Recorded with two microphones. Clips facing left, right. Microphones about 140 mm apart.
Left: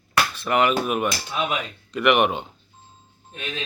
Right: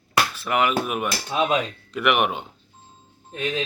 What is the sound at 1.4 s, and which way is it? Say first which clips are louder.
Speech: right 6 dB; 30° right (ahead or behind).